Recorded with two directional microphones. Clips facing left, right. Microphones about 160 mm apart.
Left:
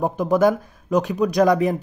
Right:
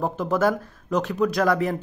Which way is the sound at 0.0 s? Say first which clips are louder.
Left 4 dB; 15° left (ahead or behind).